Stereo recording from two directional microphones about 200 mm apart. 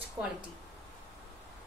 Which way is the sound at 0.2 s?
20° right (ahead or behind).